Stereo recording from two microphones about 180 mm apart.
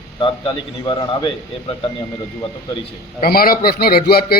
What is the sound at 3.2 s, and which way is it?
A man's voice, 55° left (ahead or behind).